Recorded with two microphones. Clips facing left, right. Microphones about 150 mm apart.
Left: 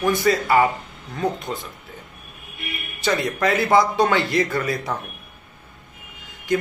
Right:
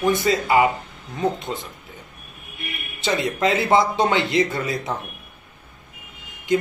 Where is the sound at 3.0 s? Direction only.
25° right (ahead or behind).